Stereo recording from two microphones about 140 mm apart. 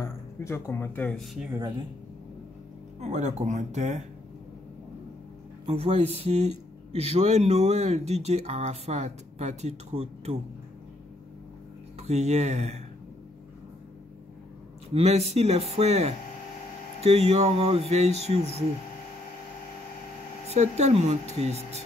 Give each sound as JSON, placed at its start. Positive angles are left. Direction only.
{"t": 0.0, "sound": "speech", "side_deg": 20}
{"t": 3.0, "sound": "speech", "side_deg": -55}
{"t": 5.7, "sound": "speech", "side_deg": -50}
{"t": 12.0, "sound": "speech", "side_deg": -55}
{"t": 15.0, "sound": "speech", "side_deg": -50}
{"t": 20.5, "sound": "speech", "side_deg": -50}